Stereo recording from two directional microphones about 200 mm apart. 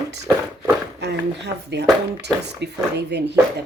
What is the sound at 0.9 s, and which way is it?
Speech, 55° right (ahead or behind).